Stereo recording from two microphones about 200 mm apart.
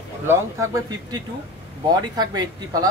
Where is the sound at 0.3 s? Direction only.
15° right (ahead or behind).